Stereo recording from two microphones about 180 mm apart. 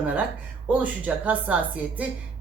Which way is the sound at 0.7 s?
10° right (ahead or behind).